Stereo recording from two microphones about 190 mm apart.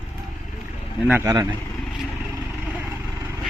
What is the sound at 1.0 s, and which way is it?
Speech, 15° right (ahead or behind).